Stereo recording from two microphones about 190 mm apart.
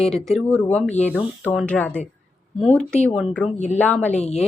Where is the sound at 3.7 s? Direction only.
5° left (ahead or behind).